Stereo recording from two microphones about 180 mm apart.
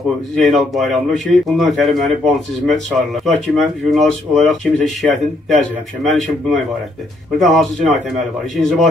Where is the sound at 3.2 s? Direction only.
Centre (ahead or behind).